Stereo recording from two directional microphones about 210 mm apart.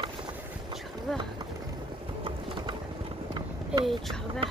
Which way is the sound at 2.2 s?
20° right (ahead or behind).